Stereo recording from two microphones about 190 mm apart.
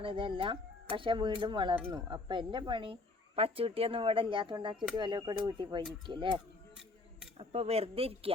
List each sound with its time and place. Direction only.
0.0 s speech: 25° right (ahead or behind)